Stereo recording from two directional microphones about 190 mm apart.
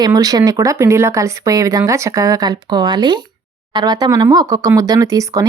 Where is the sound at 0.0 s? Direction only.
20° right (ahead or behind).